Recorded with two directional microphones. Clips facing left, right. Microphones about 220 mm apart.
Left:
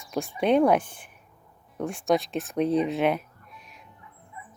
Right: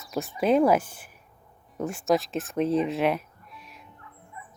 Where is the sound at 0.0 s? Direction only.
Centre (ahead or behind).